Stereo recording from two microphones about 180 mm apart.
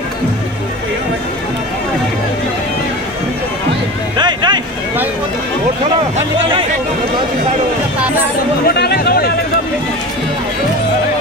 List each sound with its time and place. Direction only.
4.2 s vehicle: 25° right (ahead or behind)
8.6 s speech: 60° left (ahead or behind)